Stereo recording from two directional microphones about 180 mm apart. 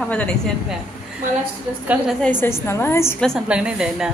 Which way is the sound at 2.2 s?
10° left (ahead or behind).